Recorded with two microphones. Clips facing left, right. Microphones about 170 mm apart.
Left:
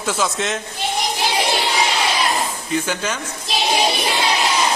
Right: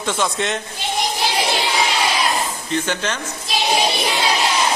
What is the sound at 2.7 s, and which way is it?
Speech, 10° left (ahead or behind).